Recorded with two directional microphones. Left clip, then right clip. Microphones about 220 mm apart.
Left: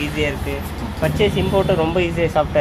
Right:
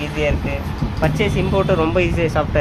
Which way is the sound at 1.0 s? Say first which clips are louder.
Left 1 dB; 10° right (ahead or behind).